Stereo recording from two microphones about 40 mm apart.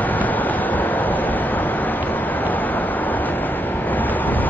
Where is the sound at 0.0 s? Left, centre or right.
Left.